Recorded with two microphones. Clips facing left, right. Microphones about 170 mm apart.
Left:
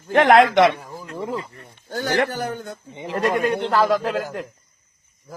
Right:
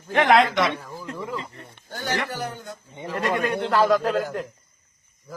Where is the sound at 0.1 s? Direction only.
45° left (ahead or behind).